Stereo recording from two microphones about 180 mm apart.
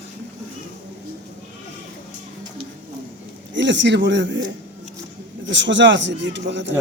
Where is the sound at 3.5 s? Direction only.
85° right.